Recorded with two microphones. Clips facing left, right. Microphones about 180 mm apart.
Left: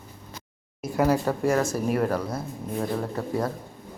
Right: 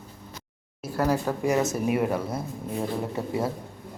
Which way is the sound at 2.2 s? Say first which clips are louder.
Even; 25° right (ahead or behind).